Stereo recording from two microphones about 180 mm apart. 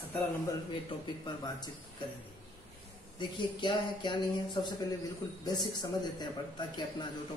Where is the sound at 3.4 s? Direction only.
25° left (ahead or behind).